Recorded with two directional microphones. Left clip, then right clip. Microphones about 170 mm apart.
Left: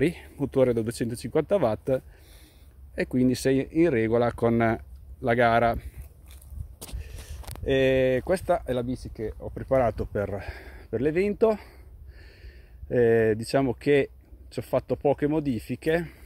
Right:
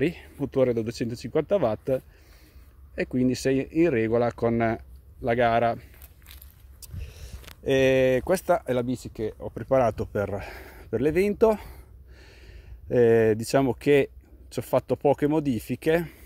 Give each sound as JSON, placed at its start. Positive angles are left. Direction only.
{"t": 0.0, "sound": "speech", "side_deg": 0}
{"t": 6.8, "sound": "speech", "side_deg": -15}
{"t": 9.7, "sound": "speech", "side_deg": -15}